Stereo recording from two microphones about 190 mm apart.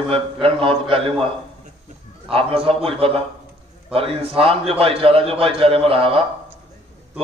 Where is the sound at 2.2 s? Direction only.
30° right (ahead or behind).